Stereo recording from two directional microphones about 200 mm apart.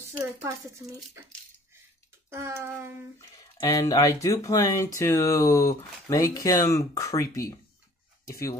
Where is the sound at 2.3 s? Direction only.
15° right (ahead or behind).